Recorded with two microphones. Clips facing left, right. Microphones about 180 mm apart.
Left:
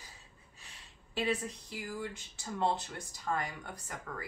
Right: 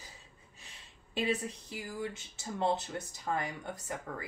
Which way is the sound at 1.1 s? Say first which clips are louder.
Right 1 dB; 20° right (ahead or behind).